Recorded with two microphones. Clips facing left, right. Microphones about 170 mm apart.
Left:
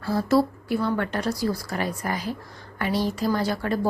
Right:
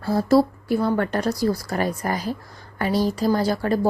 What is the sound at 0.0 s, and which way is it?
A woman's voice, 35° right (ahead or behind).